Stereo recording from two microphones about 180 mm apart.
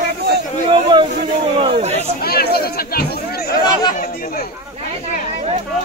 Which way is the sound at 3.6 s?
25° left (ahead or behind).